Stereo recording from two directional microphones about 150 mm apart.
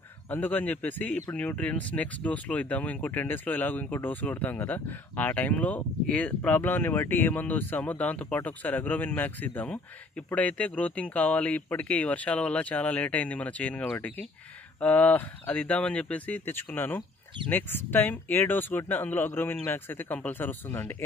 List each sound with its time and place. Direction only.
0.3 s speech: 10° left (ahead or behind)